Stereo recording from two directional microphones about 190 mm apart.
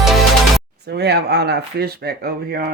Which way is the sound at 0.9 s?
60° right (ahead or behind).